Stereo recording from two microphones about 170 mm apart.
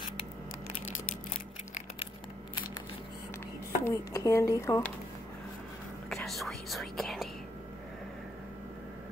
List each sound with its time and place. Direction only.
3.8 s speech: 15° left (ahead or behind)
6.0 s whispering: centre (ahead or behind)